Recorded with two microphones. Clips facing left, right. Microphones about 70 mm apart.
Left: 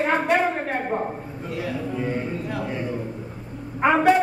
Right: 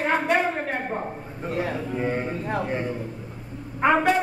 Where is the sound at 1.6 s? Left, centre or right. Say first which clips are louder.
Right 1 dB; right.